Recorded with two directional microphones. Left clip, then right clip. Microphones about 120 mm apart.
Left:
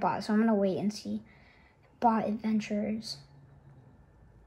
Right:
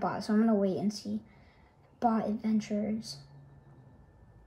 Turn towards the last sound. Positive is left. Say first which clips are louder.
# left 1 dB
turn(degrees=-20)  # may be behind; listen again after turning